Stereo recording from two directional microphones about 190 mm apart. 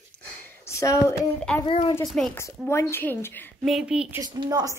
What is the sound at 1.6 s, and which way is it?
Speech, 30° left (ahead or behind).